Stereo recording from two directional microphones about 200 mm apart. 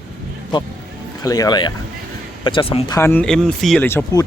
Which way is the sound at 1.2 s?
20° left (ahead or behind).